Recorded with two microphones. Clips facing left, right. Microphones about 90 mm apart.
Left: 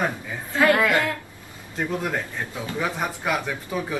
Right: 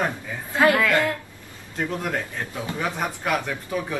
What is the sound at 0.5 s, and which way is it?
Speech, 20° right (ahead or behind).